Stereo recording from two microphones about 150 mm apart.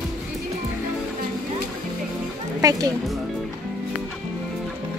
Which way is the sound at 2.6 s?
25° right (ahead or behind).